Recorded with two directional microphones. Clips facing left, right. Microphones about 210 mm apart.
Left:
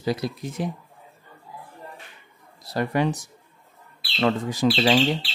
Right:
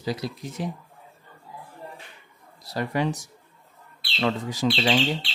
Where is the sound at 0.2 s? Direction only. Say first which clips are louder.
Left 3 dB; 55° left (ahead or behind).